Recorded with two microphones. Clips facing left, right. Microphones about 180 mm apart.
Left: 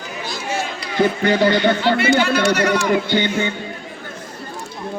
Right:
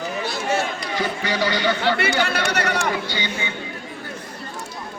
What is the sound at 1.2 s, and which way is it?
Speech, 55° left (ahead or behind).